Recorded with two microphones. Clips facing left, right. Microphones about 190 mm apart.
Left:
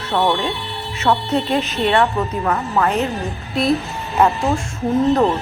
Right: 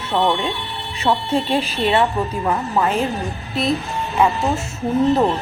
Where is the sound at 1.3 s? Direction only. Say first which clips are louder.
Left 1 dB; 30° right (ahead or behind).